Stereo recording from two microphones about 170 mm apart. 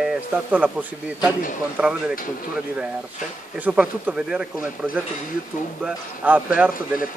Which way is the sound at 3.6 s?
10° right (ahead or behind).